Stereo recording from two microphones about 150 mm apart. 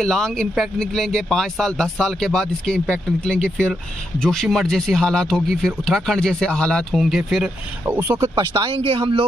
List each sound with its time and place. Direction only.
0.0 s speech: centre (ahead or behind)
8.4 s speech: 30° right (ahead or behind)